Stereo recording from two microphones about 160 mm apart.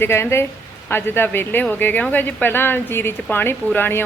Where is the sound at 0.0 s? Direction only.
15° left (ahead or behind).